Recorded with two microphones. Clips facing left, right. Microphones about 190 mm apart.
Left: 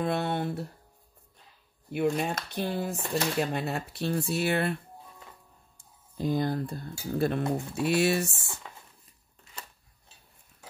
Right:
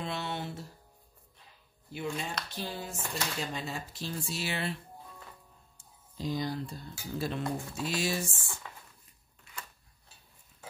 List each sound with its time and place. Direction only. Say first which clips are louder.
0.0 s speech: left 8 dB; 55° left (ahead or behind)
1.9 s speech: left 9 dB; 60° left (ahead or behind)
5.8 s speech: left 6 dB; 55° left (ahead or behind)
9.4 s a sound: even; 25° left (ahead or behind)